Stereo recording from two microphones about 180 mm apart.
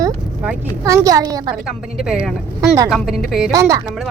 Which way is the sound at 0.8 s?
20° right (ahead or behind).